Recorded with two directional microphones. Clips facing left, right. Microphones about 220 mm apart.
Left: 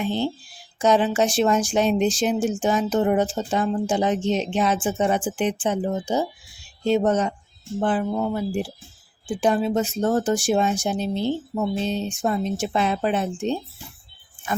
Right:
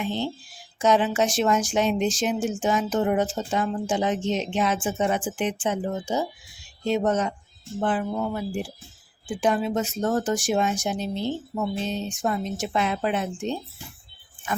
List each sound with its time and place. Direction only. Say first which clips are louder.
0.0 s speech: left 4 dB; 35° left (ahead or behind)